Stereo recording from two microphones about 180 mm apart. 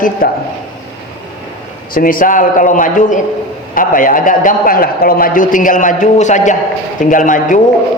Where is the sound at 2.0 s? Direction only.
50° left (ahead or behind).